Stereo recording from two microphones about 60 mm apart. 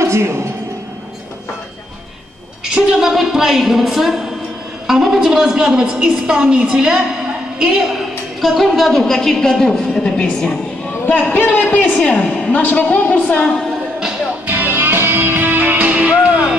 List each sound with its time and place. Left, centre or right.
0.0 s a woman's voice: right
2.6 s a woman's voice: centre
8.4 s a woman's voice: centre
11.3 s a woman's voice: left
14.4 s music: right